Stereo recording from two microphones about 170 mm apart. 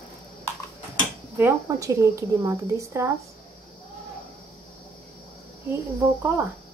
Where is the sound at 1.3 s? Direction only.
15° right (ahead or behind).